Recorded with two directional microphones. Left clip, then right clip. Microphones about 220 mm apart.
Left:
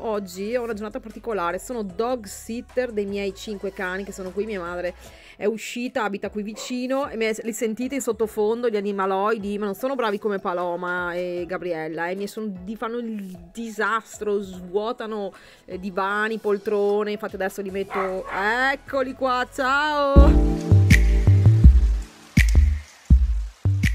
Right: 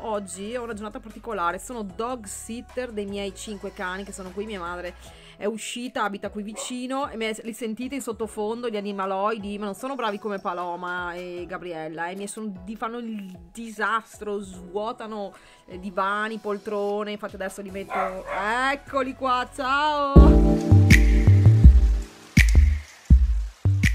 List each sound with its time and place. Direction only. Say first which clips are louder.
0.0 s speech: left 3 dB; 10° left (ahead or behind)
20.9 s music: right 1 dB; centre (ahead or behind)